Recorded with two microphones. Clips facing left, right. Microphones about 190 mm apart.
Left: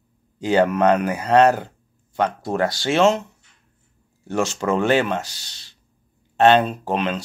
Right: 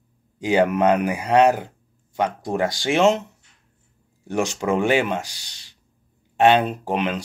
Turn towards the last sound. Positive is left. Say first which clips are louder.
# even
turn(degrees=-15)  # may be behind; listen again after turning